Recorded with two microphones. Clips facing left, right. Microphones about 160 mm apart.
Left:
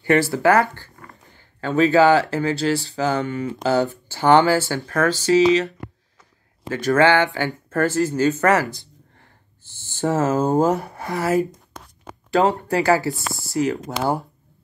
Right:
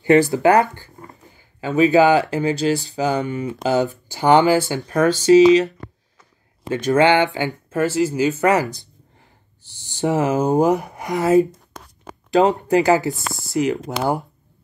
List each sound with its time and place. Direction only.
0.0 s speech: 20° right (ahead or behind)
6.7 s speech: 20° right (ahead or behind)